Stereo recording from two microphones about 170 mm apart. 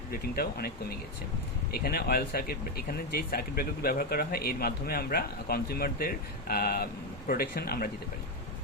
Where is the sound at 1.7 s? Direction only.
65° left (ahead or behind).